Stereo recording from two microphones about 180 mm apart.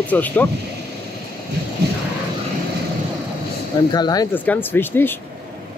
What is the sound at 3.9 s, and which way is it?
Speech, 20° left (ahead or behind).